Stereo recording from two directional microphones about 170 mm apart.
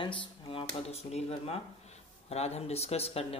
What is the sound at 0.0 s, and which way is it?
Speech, 30° left (ahead or behind).